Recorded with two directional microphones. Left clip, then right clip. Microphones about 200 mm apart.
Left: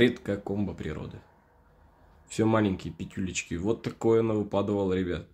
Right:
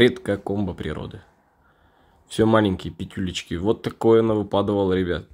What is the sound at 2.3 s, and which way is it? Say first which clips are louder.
Speech: right 7 dB; 15° right (ahead or behind).